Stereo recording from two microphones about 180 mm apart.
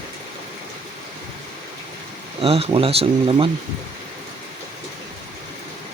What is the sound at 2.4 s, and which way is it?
Speech, 35° right (ahead or behind).